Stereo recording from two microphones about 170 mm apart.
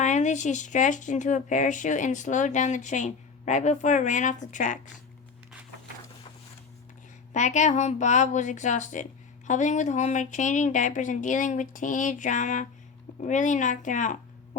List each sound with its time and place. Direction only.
0.0 s speech: 45° left (ahead or behind)
7.3 s speech: 45° left (ahead or behind)